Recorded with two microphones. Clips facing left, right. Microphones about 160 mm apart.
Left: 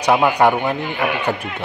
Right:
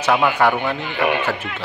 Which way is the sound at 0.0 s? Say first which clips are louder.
Left 2 dB; 15° left (ahead or behind).